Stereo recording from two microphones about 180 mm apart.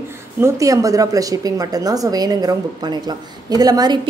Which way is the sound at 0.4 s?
20° right (ahead or behind).